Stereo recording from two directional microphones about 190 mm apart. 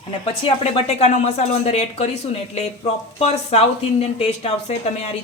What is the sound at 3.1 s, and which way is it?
Speech, 35° left (ahead or behind).